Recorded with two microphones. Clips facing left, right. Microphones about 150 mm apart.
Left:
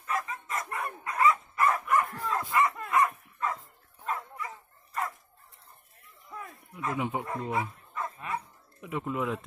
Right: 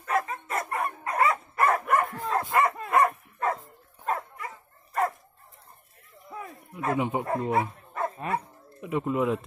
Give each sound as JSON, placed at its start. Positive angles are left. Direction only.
{"t": 0.0, "sound": "dog", "side_deg": -40}
{"t": 0.7, "sound": "dog", "side_deg": -55}
{"t": 1.1, "sound": "dog", "side_deg": -40}
{"t": 6.3, "sound": "a sound", "side_deg": -35}
{"t": 7.0, "sound": "speech", "side_deg": -25}
{"t": 7.2, "sound": "speech", "side_deg": -35}
{"t": 8.8, "sound": "speech", "side_deg": -20}